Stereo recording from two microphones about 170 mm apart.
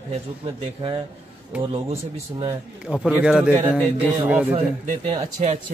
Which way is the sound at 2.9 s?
5° right (ahead or behind).